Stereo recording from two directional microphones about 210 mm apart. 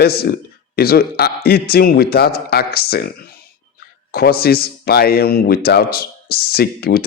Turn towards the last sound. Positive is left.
turn(degrees=50)  # may be behind; listen again after turning